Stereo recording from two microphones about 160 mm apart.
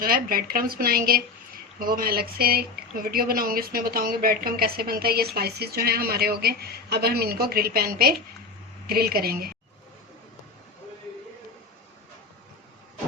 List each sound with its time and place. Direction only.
0.0 s speech: 65° right (ahead or behind)